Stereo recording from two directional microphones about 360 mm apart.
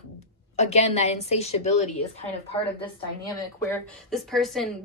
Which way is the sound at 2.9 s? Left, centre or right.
Centre.